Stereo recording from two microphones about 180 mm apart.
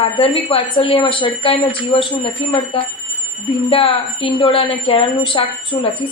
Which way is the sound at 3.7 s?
30° left (ahead or behind).